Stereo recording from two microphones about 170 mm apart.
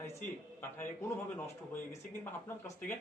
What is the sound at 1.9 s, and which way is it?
Speech, 20° left (ahead or behind).